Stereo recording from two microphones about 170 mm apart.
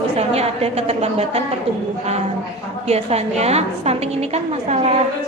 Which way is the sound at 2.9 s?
40° right (ahead or behind).